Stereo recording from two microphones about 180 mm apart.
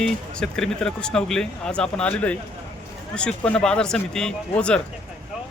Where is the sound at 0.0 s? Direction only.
5° left (ahead or behind).